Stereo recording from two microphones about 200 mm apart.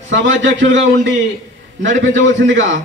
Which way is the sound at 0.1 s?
65° right (ahead or behind).